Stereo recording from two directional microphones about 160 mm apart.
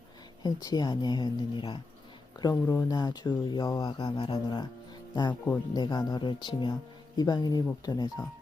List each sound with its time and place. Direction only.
0.4 s speech: 25° left (ahead or behind)
2.4 s speech: 20° left (ahead or behind)
5.7 s speech: 25° left (ahead or behind)